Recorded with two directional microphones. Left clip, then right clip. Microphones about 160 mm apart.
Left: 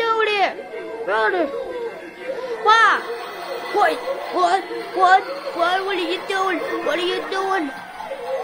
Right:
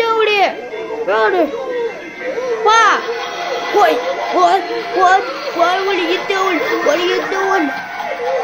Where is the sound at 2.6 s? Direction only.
10° right (ahead or behind).